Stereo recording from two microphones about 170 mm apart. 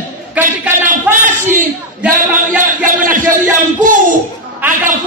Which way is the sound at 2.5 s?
50° right (ahead or behind).